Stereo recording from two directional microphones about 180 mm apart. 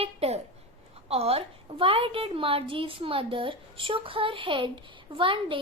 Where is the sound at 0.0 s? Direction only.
35° right (ahead or behind).